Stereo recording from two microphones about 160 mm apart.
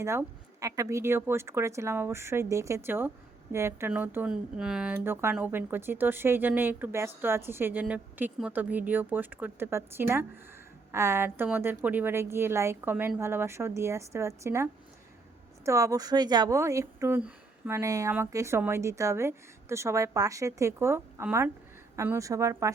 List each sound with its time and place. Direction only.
0.0 s speech: 15° right (ahead or behind)